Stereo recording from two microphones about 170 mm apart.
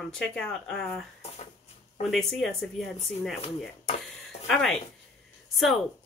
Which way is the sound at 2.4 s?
Centre (ahead or behind).